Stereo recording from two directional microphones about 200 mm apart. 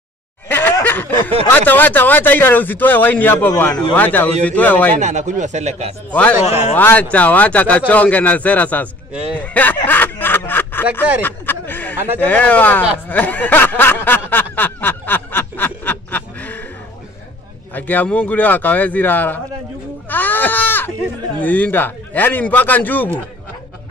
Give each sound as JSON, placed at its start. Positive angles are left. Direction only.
{"t": 0.5, "sound": "a sound", "side_deg": 10}
{"t": 1.5, "sound": "a man's voice", "side_deg": 10}
{"t": 4.9, "sound": "speech", "side_deg": -35}
{"t": 6.8, "sound": "a man's voice", "side_deg": 10}
{"t": 9.8, "sound": "a sound", "side_deg": 10}
{"t": 12.2, "sound": "a man's voice", "side_deg": 10}
{"t": 13.1, "sound": "snicker", "side_deg": 10}
{"t": 17.7, "sound": "a man's voice", "side_deg": 10}